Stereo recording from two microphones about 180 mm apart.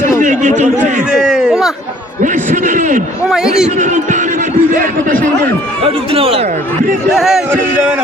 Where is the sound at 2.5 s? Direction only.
45° right (ahead or behind).